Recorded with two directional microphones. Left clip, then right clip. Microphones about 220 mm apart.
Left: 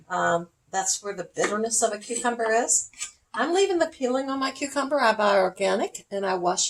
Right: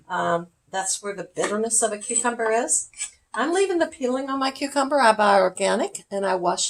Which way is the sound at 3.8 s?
25° right (ahead or behind).